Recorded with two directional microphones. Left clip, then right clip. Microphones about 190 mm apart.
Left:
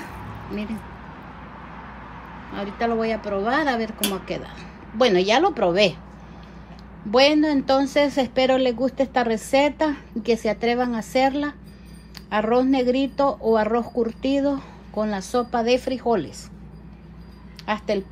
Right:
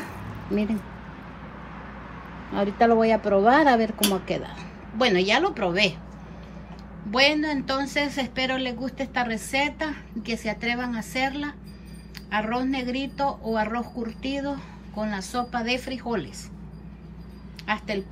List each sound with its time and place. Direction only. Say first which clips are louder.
2.5 s speech: right 4 dB; 10° right (ahead or behind)
4.9 s speech: left 3 dB; 10° left (ahead or behind)
7.1 s a woman's voice: left 4 dB; 15° left (ahead or behind)
17.6 s speech: left 4 dB; 15° left (ahead or behind)